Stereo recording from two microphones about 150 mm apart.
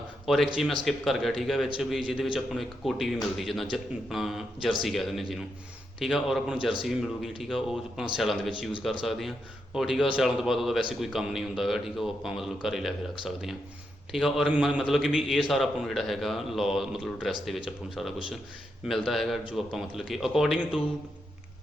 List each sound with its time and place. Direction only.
0.3 s a man's voice: centre (ahead or behind)